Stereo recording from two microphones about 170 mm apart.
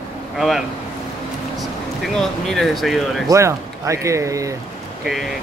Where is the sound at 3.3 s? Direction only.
20° right (ahead or behind).